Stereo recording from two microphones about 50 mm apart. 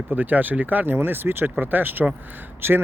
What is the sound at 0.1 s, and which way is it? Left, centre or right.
Speech, right.